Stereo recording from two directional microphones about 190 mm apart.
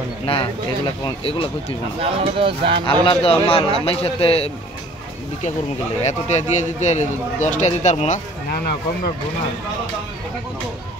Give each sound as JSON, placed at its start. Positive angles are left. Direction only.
{"t": 0.2, "sound": "a man's voice", "side_deg": 30}
{"t": 2.0, "sound": "speech", "side_deg": -30}
{"t": 3.1, "sound": "a man's voice", "side_deg": 30}
{"t": 6.0, "sound": "speech", "side_deg": 35}
{"t": 8.5, "sound": "speech", "side_deg": 55}